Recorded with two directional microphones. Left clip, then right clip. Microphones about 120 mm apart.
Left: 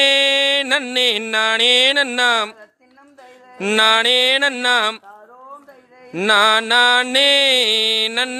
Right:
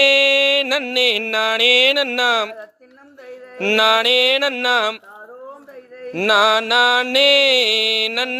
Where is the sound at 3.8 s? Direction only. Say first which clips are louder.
Left 1 dB; 20° left (ahead or behind).